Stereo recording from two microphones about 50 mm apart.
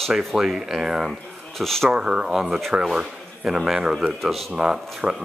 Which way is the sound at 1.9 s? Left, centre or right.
Centre.